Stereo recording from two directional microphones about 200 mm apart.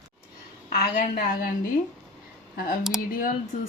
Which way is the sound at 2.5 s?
45° left (ahead or behind).